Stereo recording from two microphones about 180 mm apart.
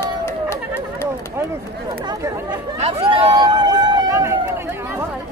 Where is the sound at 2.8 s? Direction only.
25° right (ahead or behind).